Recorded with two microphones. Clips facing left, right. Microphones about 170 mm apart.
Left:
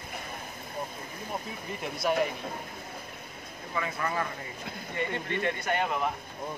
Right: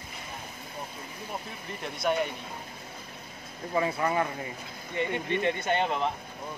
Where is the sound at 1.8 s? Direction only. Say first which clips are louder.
Right 1 dB; centre (ahead or behind).